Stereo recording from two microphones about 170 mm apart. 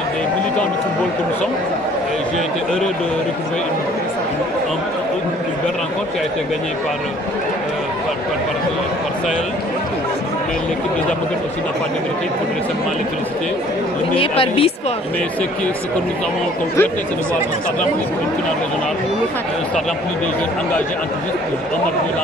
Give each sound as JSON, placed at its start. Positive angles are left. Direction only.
{"t": 14.1, "sound": "speech", "side_deg": 30}